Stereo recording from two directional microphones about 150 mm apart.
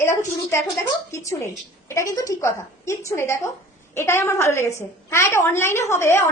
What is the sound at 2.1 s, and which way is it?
A child's voice, 20° left (ahead or behind).